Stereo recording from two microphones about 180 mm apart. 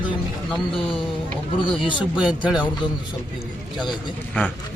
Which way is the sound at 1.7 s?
25° left (ahead or behind).